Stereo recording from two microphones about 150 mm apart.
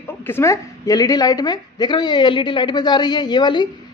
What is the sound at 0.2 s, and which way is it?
A woman's voice, 15° left (ahead or behind).